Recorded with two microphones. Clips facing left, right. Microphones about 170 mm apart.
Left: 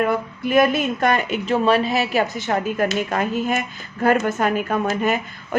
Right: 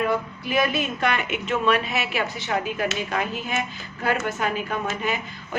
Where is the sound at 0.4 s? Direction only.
50° left (ahead or behind).